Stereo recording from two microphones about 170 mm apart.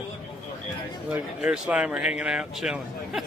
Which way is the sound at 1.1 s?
5° right (ahead or behind).